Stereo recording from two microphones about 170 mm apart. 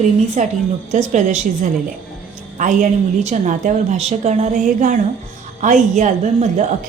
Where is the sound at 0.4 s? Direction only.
45° right (ahead or behind).